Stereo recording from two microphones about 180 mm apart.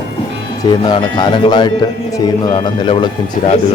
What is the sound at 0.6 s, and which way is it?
Speech, 25° left (ahead or behind).